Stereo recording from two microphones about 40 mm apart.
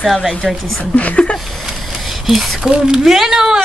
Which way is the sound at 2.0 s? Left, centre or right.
Centre.